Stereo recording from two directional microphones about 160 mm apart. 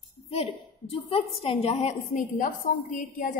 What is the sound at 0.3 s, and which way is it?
A woman's voice, 35° left (ahead or behind).